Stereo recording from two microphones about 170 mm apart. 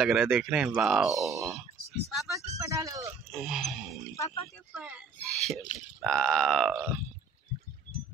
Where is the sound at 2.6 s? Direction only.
20° right (ahead or behind).